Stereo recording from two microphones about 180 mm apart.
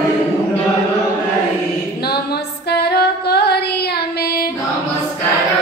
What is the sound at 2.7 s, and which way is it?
Female singing, 65° left (ahead or behind).